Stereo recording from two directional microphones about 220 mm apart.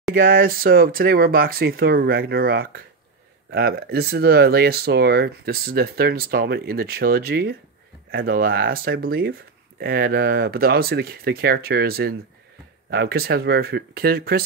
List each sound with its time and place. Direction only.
0.1 s speech: 40° right (ahead or behind)